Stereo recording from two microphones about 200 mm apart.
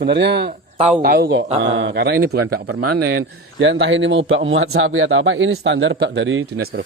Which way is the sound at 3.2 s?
65° right (ahead or behind).